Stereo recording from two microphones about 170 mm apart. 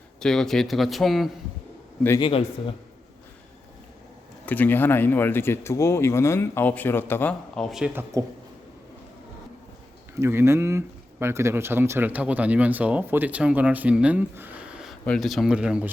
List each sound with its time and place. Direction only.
0.2 s speech: 5° left (ahead or behind)
2.2 s speech: 30° left (ahead or behind)
4.4 s speech: 10° left (ahead or behind)
8.1 s speech: 20° right (ahead or behind)
10.2 s speech: 15° right (ahead or behind)